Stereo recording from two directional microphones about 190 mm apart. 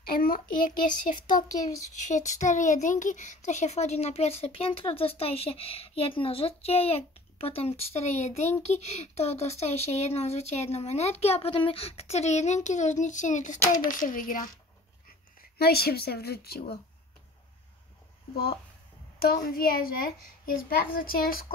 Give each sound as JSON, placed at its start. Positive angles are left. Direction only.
{"t": 0.0, "sound": "a child's voice", "side_deg": 50}
{"t": 15.5, "sound": "a woman's voice", "side_deg": 55}
{"t": 19.1, "sound": "a child's voice", "side_deg": 55}